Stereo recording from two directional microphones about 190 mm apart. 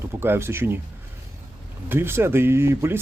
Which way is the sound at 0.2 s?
10° right (ahead or behind).